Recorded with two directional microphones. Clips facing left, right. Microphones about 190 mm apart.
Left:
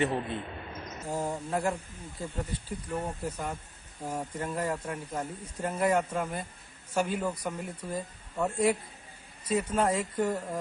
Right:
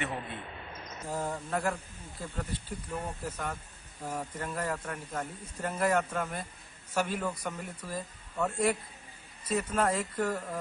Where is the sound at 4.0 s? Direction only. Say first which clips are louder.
Left 2 dB; 25° left (ahead or behind).